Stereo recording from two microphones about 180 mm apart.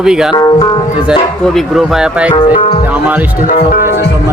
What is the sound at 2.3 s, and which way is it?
Speech, 30° left (ahead or behind).